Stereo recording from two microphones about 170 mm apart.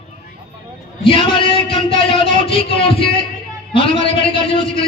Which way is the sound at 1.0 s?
30° left (ahead or behind).